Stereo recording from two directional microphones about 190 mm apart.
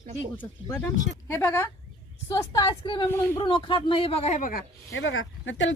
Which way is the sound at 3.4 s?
25° left (ahead or behind).